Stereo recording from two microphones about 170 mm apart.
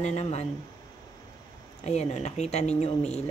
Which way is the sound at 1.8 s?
40° left (ahead or behind).